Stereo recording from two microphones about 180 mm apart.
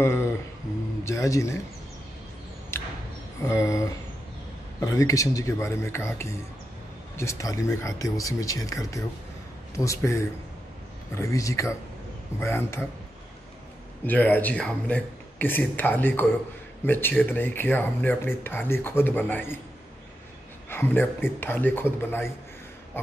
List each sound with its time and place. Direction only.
0.0 s music: 15° left (ahead or behind)
1.0 s speech: 15° left (ahead or behind)
2.7 s a sound: 15° left (ahead or behind)
3.4 s speech: 15° left (ahead or behind)
14.0 s speech: 10° left (ahead or behind)
20.7 s speech: 10° left (ahead or behind)